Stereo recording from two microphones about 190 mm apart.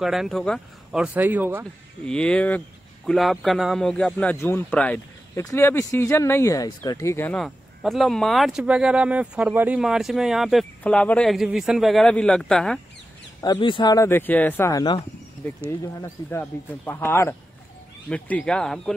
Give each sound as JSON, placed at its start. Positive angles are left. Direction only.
{"t": 0.0, "sound": "speech", "side_deg": 0}
{"t": 2.0, "sound": "speech", "side_deg": 5}
{"t": 13.4, "sound": "speech", "side_deg": 25}
{"t": 16.3, "sound": "speech", "side_deg": 10}